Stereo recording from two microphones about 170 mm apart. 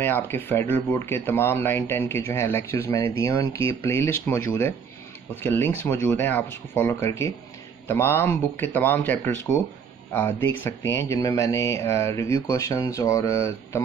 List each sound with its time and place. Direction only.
0.0 s speech: 10° left (ahead or behind)